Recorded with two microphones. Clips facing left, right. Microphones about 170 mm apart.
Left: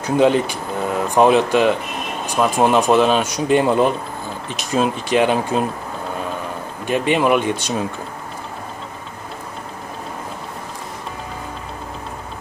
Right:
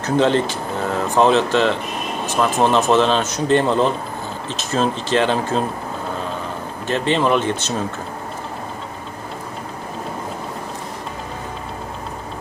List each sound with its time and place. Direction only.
0.0 s speech: 10° left (ahead or behind)
6.9 s speech: 10° left (ahead or behind)